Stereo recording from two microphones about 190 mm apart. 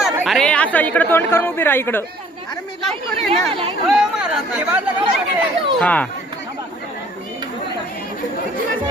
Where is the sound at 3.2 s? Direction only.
30° right (ahead or behind).